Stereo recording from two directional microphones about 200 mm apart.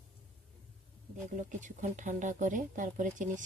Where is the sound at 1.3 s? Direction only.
40° right (ahead or behind).